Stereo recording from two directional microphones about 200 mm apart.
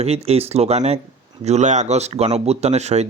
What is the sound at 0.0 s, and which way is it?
Speech, 30° right (ahead or behind).